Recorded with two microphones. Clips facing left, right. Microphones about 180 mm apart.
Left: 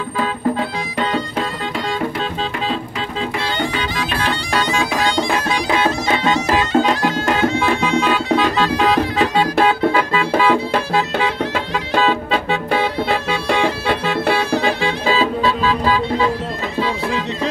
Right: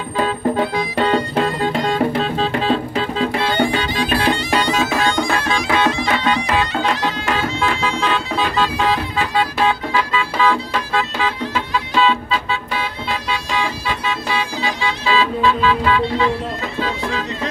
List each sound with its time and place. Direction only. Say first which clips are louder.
3.7 s bagpipes: right 3 dB; 30° right (ahead or behind)
6.2 s bagpipes: left 3 dB; 45° left (ahead or behind)
9.6 s music: left 4 dB; 60° left (ahead or behind)
11.5 s music: left 1 dB; 55° left (ahead or behind); by 16.3 s 35° left (ahead or behind)